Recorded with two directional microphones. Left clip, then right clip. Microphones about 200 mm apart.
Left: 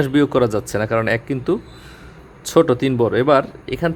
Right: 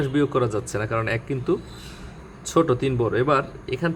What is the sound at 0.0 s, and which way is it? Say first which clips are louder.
Speech: left 6 dB; 35° left (ahead or behind).